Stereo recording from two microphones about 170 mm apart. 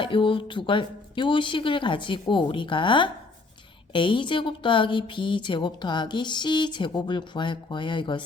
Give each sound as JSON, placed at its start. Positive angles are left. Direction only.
{"t": 0.0, "sound": "a woman's voice", "side_deg": 30}